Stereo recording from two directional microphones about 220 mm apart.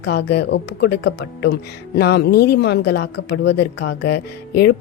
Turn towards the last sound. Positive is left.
turn(degrees=50)  # may be behind; listen again after turning